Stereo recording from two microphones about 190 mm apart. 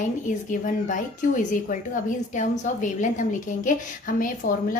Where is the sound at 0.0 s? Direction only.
40° left (ahead or behind).